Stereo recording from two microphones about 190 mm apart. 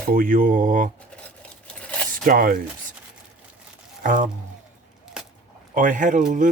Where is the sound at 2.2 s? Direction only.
50° right (ahead or behind).